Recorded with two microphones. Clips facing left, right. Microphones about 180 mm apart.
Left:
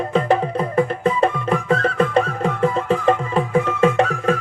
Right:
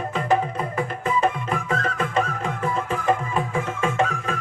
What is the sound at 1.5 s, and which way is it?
Music, 35° left (ahead or behind).